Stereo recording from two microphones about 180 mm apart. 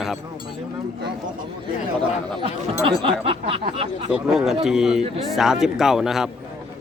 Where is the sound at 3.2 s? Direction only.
30° right (ahead or behind).